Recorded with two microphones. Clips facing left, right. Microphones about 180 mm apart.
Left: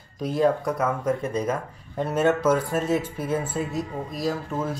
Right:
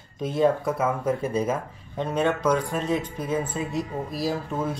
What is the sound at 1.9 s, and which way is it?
Speech, 5° left (ahead or behind).